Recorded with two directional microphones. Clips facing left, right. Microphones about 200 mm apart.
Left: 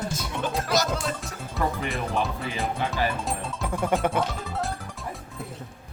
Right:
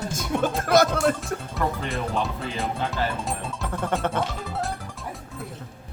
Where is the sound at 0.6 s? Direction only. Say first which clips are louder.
Right 7 dB; 55° right (ahead or behind).